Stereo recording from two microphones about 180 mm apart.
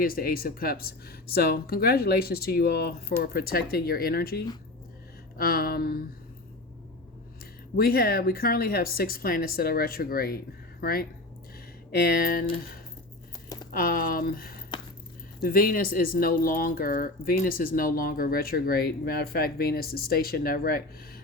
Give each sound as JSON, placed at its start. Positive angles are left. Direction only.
{"t": 0.0, "sound": "speech", "side_deg": 55}
{"t": 7.8, "sound": "speech", "side_deg": 55}
{"t": 13.7, "sound": "speech", "side_deg": 55}